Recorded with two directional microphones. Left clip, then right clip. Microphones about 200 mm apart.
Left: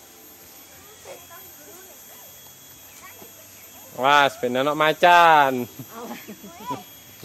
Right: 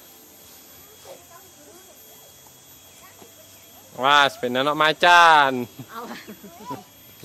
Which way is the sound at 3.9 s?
Centre (ahead or behind).